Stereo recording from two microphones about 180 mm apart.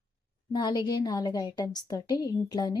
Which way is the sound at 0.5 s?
25° left (ahead or behind).